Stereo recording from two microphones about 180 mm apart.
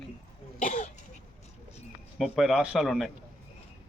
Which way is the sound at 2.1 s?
Centre (ahead or behind).